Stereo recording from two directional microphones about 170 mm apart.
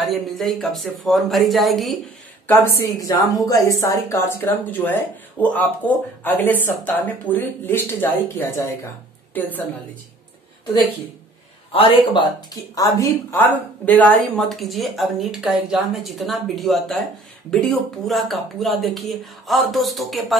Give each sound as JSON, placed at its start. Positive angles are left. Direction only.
{"t": 0.0, "sound": "speech", "side_deg": 0}
{"t": 2.4, "sound": "a woman's voice", "side_deg": 15}
{"t": 11.7, "sound": "a man's voice", "side_deg": 25}